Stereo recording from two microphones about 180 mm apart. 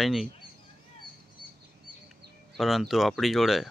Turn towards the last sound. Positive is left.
turn(degrees=0)  # may be behind; listen again after turning